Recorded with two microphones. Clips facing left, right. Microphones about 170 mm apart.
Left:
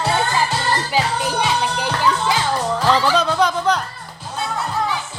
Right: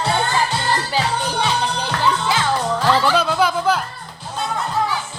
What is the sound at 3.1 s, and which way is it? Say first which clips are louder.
Music: even; 5° right (ahead or behind).